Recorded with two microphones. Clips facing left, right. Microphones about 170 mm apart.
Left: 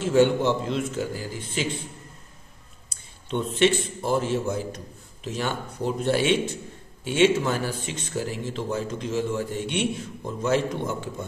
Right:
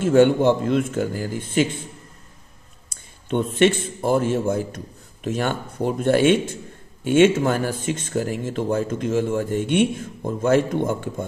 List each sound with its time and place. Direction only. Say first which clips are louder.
0.0 s speech: right 5 dB; 50° right (ahead or behind)
2.9 s a man's voice: right 5 dB; 50° right (ahead or behind)